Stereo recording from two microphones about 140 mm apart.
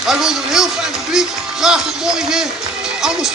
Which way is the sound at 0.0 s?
5° right (ahead or behind).